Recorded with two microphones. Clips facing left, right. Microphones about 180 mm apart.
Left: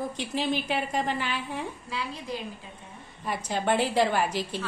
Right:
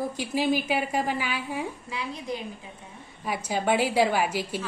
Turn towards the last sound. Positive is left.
turn(degrees=-10)  # may be behind; listen again after turning